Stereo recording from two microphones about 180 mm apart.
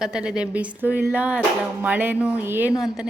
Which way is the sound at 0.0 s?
5° right (ahead or behind).